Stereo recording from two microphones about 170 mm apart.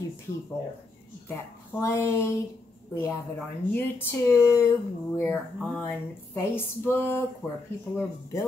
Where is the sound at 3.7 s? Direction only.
15° left (ahead or behind).